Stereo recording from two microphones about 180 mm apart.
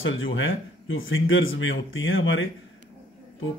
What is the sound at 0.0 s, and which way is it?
A man's voice, 90° left.